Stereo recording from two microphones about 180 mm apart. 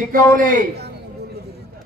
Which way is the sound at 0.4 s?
50° right (ahead or behind).